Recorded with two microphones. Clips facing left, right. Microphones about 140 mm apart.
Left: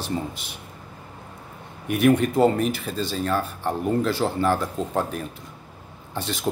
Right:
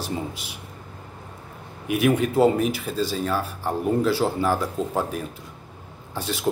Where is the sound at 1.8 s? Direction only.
5° right (ahead or behind).